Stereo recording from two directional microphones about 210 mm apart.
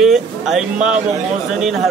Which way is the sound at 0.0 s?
Centre (ahead or behind).